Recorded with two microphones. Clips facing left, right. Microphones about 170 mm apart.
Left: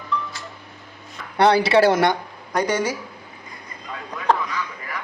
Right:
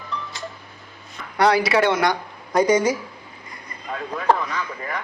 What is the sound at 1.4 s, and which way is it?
Speech, 30° left (ahead or behind).